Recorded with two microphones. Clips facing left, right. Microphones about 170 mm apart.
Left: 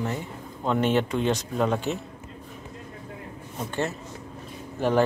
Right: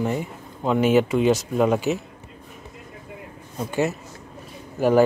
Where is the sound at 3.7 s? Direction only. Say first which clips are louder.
Right 6 dB; 10° right (ahead or behind).